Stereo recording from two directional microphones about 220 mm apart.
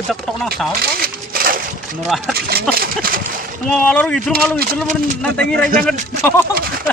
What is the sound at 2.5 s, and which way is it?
Speech, 40° right (ahead or behind).